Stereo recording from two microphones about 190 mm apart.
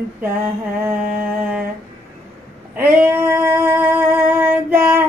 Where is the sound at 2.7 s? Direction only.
10° right (ahead or behind).